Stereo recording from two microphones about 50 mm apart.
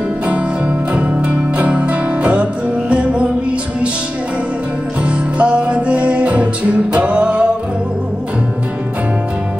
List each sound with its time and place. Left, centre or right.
0.3 s music: right
5.0 s music: right